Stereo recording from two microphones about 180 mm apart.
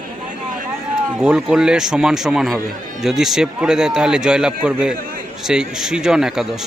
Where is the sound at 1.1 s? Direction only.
5° right (ahead or behind).